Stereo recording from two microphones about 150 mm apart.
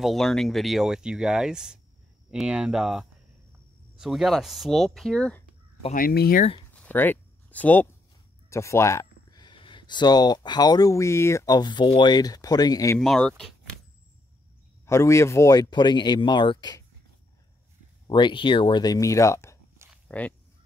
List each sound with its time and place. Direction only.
0.0 s speech: centre (ahead or behind)
5.9 s speech: 85° left
6.7 s a sound: 10° left (ahead or behind)
8.5 s speech: 20° left (ahead or behind)
13.0 s speech: centre (ahead or behind)
14.9 s speech: 20° left (ahead or behind)
18.0 s speech: 30° left (ahead or behind); by 20.3 s 10° left (ahead or behind)